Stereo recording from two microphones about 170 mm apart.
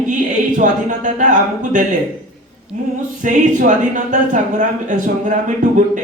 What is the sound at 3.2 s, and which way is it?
Speech, 50° right (ahead or behind).